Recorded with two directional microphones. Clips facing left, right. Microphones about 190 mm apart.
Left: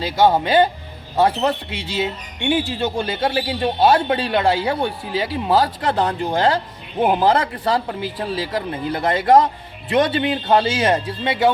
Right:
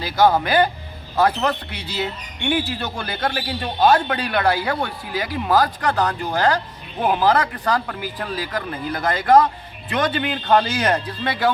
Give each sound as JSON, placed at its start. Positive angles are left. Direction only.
{"t": 0.0, "sound": "a man's voice", "side_deg": 25}